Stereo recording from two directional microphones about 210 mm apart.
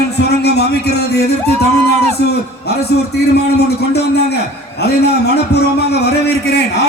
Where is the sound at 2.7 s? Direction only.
50° left (ahead or behind).